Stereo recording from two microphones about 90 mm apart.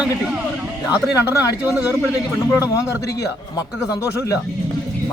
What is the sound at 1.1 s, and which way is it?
Speech, 35° left (ahead or behind).